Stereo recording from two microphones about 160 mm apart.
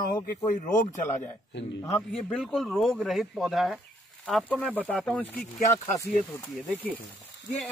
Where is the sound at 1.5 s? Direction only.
90° left.